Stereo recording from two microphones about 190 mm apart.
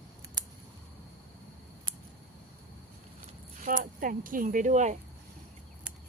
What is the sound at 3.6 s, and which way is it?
Speech, 45° right (ahead or behind).